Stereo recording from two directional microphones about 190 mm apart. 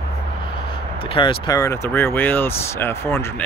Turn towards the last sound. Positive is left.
turn(degrees=15)  # may be behind; listen again after turning